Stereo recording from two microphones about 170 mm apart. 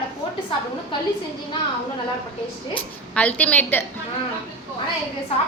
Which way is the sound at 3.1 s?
10° left (ahead or behind).